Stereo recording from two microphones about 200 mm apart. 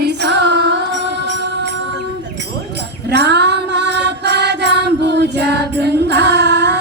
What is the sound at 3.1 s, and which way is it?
Music, 55° right (ahead or behind).